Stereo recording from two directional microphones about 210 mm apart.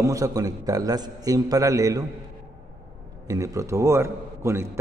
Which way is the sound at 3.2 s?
15° right (ahead or behind).